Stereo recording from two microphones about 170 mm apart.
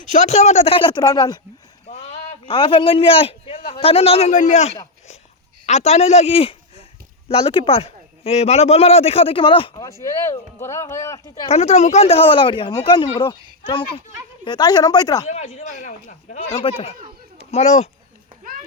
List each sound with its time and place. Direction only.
0.1 s a man's voice: 45° left (ahead or behind); by 1.4 s 20° left (ahead or behind)
1.9 s a sound: 40° left (ahead or behind)
2.4 s a man's voice: 30° left (ahead or behind)
10.6 s speech: 15° left (ahead or behind)
11.4 s a man's voice: 40° left (ahead or behind); by 15.3 s 20° left (ahead or behind)
15.3 s a man's voice: 40° left (ahead or behind)